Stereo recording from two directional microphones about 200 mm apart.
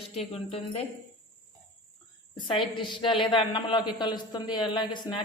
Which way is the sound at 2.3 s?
25° left (ahead or behind).